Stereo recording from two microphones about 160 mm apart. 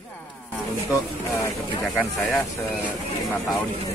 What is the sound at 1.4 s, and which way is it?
Vehicle, 20° left (ahead or behind).